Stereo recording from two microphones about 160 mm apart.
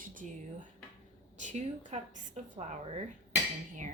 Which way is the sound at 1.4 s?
50° right (ahead or behind).